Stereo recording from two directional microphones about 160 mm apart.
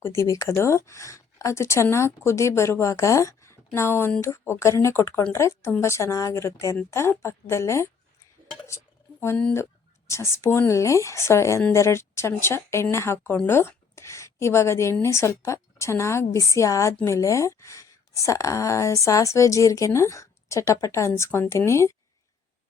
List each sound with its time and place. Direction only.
0.0 s a woman's voice: 15° left (ahead or behind)